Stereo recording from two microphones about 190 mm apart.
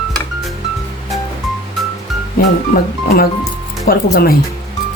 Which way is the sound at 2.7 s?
50° left (ahead or behind).